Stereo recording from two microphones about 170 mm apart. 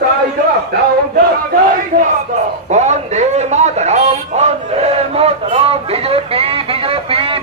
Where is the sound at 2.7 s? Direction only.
45° right (ahead or behind).